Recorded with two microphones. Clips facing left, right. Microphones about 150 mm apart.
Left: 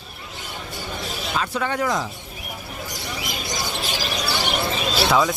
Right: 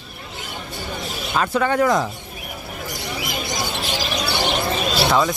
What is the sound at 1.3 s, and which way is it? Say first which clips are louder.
Speech: right 6 dB; 55° right (ahead or behind).